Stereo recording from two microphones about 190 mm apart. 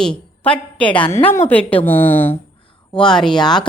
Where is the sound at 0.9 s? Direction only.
25° left (ahead or behind).